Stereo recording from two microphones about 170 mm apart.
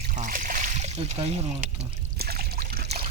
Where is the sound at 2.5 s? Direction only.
55° right (ahead or behind).